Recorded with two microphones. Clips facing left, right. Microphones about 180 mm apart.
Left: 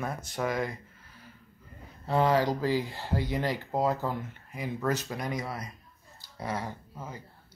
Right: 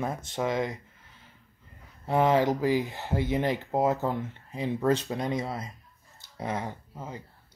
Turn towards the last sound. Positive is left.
turn(degrees=-20)  # may be behind; listen again after turning